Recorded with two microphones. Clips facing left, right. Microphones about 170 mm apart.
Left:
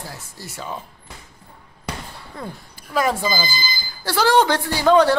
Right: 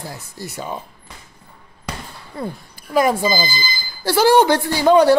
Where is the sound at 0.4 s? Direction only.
15° right (ahead or behind).